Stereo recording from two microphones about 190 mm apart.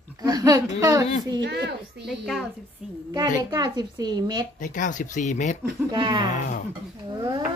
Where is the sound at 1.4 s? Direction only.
65° right (ahead or behind).